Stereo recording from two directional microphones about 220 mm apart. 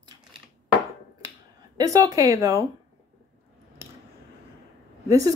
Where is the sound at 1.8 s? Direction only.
15° right (ahead or behind).